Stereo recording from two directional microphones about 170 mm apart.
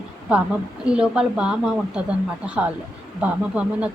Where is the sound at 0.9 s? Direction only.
5° right (ahead or behind).